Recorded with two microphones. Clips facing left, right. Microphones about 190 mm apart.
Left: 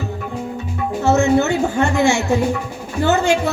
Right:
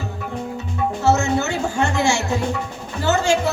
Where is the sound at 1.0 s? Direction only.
60° left (ahead or behind).